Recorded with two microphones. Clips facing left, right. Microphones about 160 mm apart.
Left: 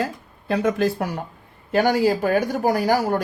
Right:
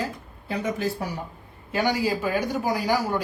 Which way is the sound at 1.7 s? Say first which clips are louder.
Left 6 dB; 50° left (ahead or behind).